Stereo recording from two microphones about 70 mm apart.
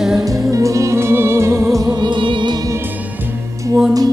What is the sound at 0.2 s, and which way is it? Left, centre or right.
Music, right.